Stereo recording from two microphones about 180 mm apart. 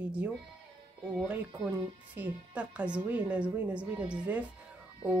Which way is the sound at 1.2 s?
10° right (ahead or behind).